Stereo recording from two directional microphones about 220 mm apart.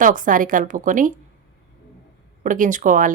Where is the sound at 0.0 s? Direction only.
35° right (ahead or behind).